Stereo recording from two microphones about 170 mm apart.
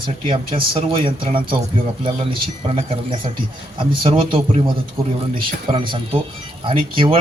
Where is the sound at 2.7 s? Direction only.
35° right (ahead or behind).